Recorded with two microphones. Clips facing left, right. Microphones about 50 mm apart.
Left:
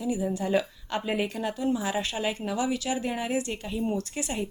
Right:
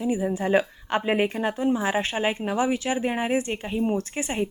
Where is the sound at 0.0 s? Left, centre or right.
Right.